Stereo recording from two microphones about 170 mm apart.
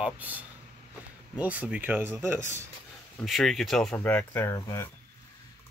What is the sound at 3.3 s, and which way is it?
Speech, centre (ahead or behind).